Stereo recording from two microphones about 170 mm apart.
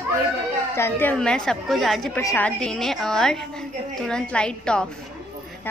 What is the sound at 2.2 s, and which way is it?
Speech, 15° left (ahead or behind).